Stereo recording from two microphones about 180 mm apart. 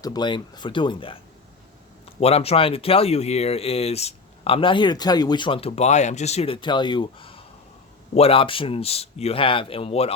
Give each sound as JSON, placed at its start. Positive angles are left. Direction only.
{"t": 0.0, "sound": "speech", "side_deg": 25}
{"t": 2.2, "sound": "speech", "side_deg": 35}